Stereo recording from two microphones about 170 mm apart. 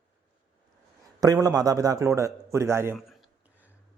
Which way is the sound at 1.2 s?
20° right (ahead or behind).